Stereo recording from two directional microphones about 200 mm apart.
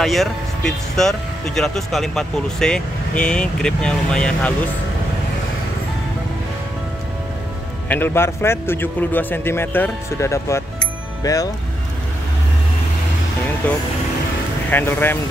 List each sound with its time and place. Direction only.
0.0 s speech: centre (ahead or behind)
7.9 s a man's voice: 10° left (ahead or behind)
13.6 s a man's voice: 10° left (ahead or behind)